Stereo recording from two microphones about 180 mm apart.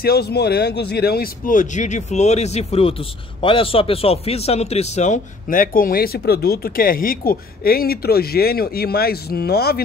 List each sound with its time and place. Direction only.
0.0 s speech: 60° left (ahead or behind)